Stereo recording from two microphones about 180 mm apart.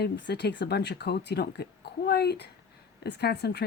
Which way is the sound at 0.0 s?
65° left (ahead or behind).